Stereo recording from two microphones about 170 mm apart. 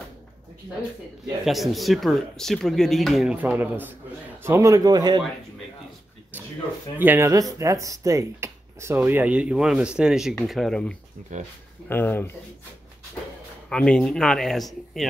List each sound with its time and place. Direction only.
1.4 s speech: centre (ahead or behind)
3.3 s speech: 10° right (ahead or behind)
6.3 s a sound: 10° right (ahead or behind)
7.0 s speech: 10° right (ahead or behind); by 12.3 s 10° left (ahead or behind)
13.7 s speech: 5° left (ahead or behind)